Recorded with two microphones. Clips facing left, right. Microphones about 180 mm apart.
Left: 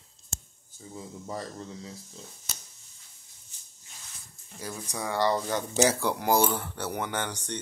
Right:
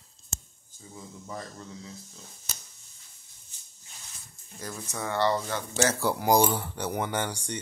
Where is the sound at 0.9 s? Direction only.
35° left (ahead or behind).